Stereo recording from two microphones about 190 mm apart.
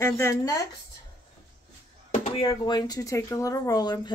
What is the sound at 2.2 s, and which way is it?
Speech, 30° left (ahead or behind).